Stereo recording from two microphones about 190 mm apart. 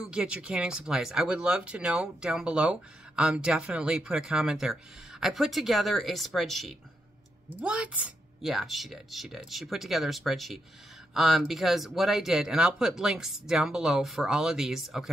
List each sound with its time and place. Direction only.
0.0 s speech: 5° right (ahead or behind)